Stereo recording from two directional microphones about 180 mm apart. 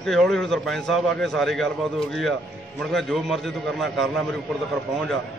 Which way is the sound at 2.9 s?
Centre (ahead or behind).